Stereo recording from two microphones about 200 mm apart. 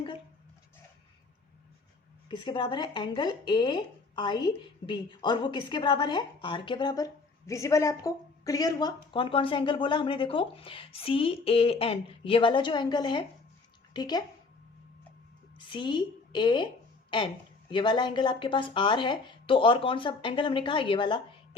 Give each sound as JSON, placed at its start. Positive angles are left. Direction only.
{"t": 2.3, "sound": "speech", "side_deg": 25}
{"t": 15.5, "sound": "a woman's voice", "side_deg": 25}